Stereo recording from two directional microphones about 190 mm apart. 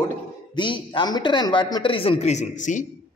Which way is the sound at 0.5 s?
25° left (ahead or behind).